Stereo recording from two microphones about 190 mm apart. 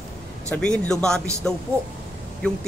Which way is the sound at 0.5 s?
5° left (ahead or behind).